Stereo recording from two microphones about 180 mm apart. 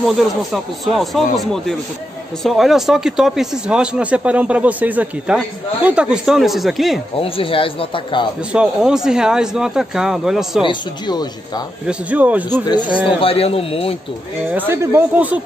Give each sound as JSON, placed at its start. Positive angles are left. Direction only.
{"t": 0.0, "sound": "speech", "side_deg": 0}
{"t": 7.2, "sound": "speech", "side_deg": 30}
{"t": 8.5, "sound": "speech", "side_deg": -5}
{"t": 10.6, "sound": "speech", "side_deg": 25}
{"t": 11.9, "sound": "speech", "side_deg": -10}
{"t": 12.6, "sound": "a man's voice", "side_deg": 25}
{"t": 14.5, "sound": "speech", "side_deg": -10}